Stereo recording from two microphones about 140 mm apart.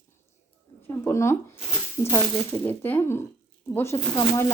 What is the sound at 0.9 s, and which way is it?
Speech, 20° left (ahead or behind).